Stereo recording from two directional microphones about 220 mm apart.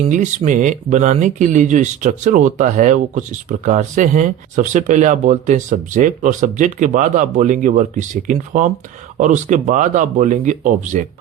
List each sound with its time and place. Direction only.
0.0 s speech: 35° right (ahead or behind)